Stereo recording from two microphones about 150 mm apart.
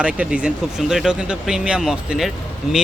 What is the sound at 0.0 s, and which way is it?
Speech, 5° right (ahead or behind).